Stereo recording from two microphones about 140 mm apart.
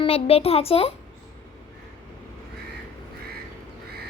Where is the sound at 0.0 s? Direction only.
45° left (ahead or behind).